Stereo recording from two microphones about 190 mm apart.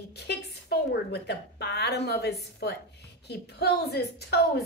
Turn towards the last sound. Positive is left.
turn(degrees=60)  # may be behind; listen again after turning